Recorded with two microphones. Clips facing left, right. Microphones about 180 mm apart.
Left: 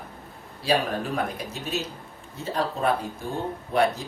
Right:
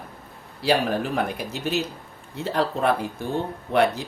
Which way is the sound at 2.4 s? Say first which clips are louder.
Right 3 dB; 70° right (ahead or behind).